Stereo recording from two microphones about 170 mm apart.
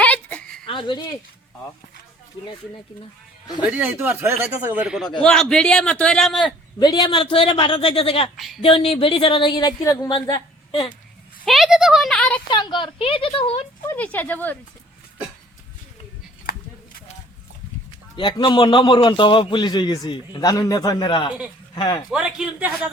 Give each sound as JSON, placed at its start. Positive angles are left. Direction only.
{"t": 0.0, "sound": "a sound", "side_deg": 10}
{"t": 0.7, "sound": "a sound", "side_deg": 30}
{"t": 3.7, "sound": "a man's voice", "side_deg": -10}
{"t": 6.7, "sound": "a man's voice", "side_deg": 25}
{"t": 8.4, "sound": "a man's voice", "side_deg": 0}
{"t": 8.6, "sound": "a man's voice", "side_deg": 30}
{"t": 11.4, "sound": "a man's voice", "side_deg": 0}
{"t": 12.5, "sound": "a man's voice", "side_deg": 25}
{"t": 13.8, "sound": "speech", "side_deg": 10}
{"t": 16.5, "sound": "a sound", "side_deg": 65}
{"t": 18.2, "sound": "a man's voice", "side_deg": 30}
{"t": 22.1, "sound": "a man's voice", "side_deg": -5}